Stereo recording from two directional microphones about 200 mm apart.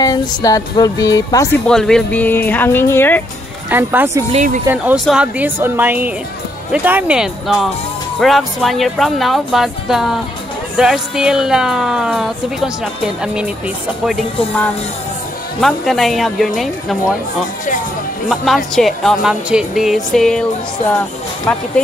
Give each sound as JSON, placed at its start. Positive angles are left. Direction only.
{"t": 0.0, "sound": "speech", "side_deg": 20}
{"t": 1.7, "sound": "speech", "side_deg": 5}
{"t": 3.7, "sound": "speech", "side_deg": -10}
{"t": 4.3, "sound": "speech", "side_deg": -35}
{"t": 4.6, "sound": "speech", "side_deg": -5}
{"t": 15.6, "sound": "speech", "side_deg": 0}
{"t": 18.3, "sound": "speech", "side_deg": 0}
{"t": 21.5, "sound": "speech", "side_deg": 5}